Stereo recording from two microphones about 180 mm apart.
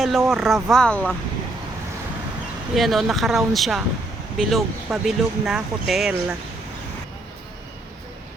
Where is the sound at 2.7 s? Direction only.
Centre (ahead or behind).